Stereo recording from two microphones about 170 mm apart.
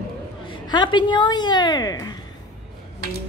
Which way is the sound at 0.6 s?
25° left (ahead or behind).